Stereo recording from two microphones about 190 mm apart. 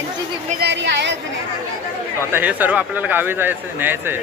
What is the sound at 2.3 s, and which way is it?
Speech, 10° right (ahead or behind).